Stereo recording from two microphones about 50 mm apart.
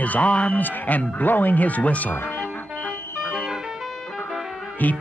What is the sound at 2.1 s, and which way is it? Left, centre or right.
Music, left.